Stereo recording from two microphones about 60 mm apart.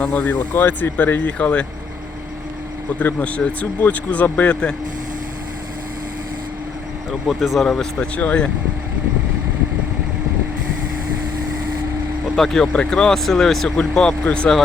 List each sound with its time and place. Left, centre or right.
0.0 s speech: left
3.0 s speech: left
7.3 s speech: centre
7.9 s speech: left
12.4 s speech: centre
13.7 s speech: centre